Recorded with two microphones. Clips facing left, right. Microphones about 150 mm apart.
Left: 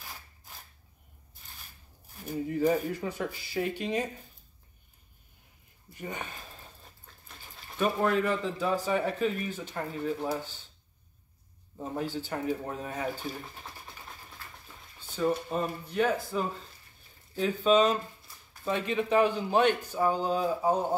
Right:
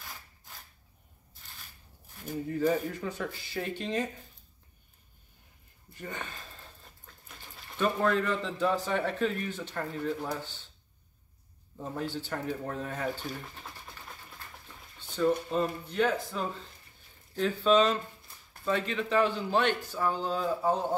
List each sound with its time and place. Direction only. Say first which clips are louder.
2.5 s a man's voice: left 1 dB; 10° left (ahead or behind)
5.9 s a man's voice: left 2 dB; 15° left (ahead or behind)
7.6 s a man's voice: even; 10° left (ahead or behind)
12.3 s a man's voice: left 2 dB; 10° left (ahead or behind)
15.0 s a man's voice: right 1 dB; 10° left (ahead or behind)